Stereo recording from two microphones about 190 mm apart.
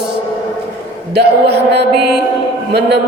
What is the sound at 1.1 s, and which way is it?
A woman's voice, 60° right (ahead or behind).